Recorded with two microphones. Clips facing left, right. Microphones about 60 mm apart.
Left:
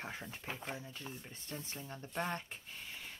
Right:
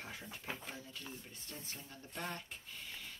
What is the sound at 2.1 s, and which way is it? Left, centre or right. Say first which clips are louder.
Speech: left 5 dB; left.